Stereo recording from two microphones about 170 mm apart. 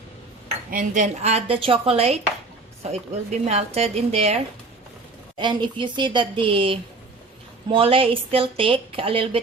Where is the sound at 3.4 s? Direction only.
40° right (ahead or behind).